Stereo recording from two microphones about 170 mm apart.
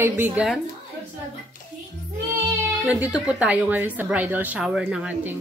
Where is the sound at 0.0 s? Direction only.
10° right (ahead or behind).